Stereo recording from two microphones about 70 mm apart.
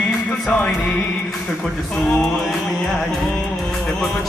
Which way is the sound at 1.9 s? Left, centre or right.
Centre.